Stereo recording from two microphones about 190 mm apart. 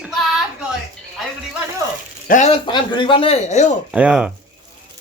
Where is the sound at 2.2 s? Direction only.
40° left (ahead or behind).